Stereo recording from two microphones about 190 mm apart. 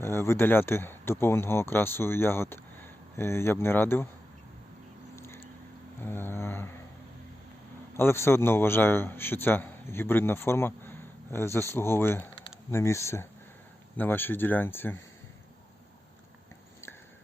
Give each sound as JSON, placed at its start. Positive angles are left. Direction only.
{"t": 0.0, "sound": "a man's voice", "side_deg": 15}
{"t": 5.1, "sound": "vehicle", "side_deg": 15}
{"t": 7.9, "sound": "a man's voice", "side_deg": 15}